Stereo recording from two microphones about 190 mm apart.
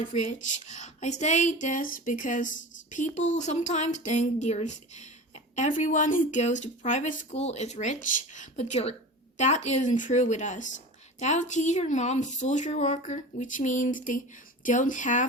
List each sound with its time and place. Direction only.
0.1 s a woman's voice: 40° left (ahead or behind)